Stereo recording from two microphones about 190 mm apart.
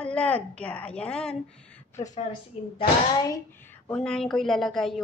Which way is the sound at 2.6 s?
35° left (ahead or behind).